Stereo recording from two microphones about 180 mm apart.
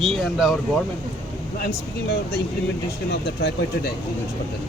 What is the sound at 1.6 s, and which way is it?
Speech, 60° left (ahead or behind).